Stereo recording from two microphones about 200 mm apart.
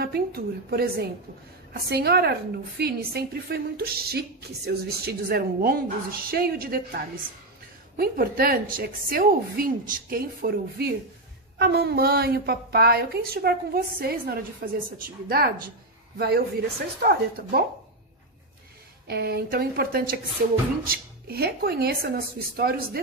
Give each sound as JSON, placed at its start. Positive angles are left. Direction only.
{"t": 0.0, "sound": "a woman's voice", "side_deg": -50}
{"t": 8.0, "sound": "a woman's voice", "side_deg": -50}
{"t": 19.0, "sound": "a woman's voice", "side_deg": -55}